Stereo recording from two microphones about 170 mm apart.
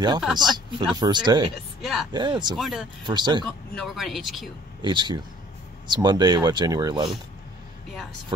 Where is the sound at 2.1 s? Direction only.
25° right (ahead or behind).